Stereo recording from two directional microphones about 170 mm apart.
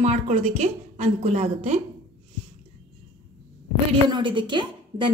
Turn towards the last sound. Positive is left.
turn(degrees=-30)  # may be behind; listen again after turning